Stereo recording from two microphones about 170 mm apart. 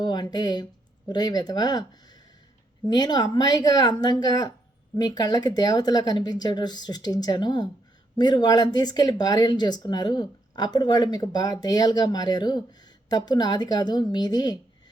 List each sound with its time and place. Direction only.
0.0 s speech: 25° left (ahead or behind)
2.8 s speech: 25° left (ahead or behind)